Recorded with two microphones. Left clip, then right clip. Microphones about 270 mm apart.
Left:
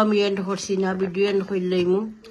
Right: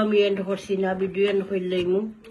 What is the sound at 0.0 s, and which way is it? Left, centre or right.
Speech, centre.